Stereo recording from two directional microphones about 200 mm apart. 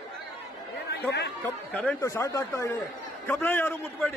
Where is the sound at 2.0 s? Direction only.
15° left (ahead or behind).